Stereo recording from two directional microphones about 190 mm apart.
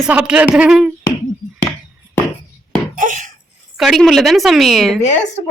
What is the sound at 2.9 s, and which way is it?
Dishes, 45° right (ahead or behind).